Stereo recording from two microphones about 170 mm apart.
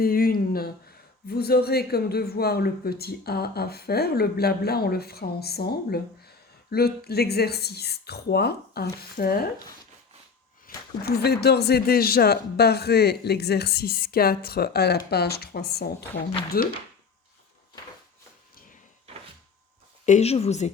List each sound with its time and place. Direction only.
0.0 s a man's voice: 60° left (ahead or behind)
10.7 s a sound: 60° left (ahead or behind)
11.0 s a man's voice: 70° left (ahead or behind)
20.1 s speech: 40° left (ahead or behind)